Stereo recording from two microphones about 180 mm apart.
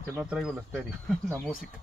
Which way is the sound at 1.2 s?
10° left (ahead or behind).